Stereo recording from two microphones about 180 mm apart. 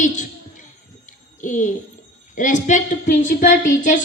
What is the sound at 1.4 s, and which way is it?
A woman's voice, 45° left (ahead or behind).